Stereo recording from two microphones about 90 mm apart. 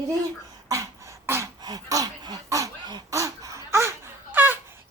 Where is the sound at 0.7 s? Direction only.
40° right (ahead or behind).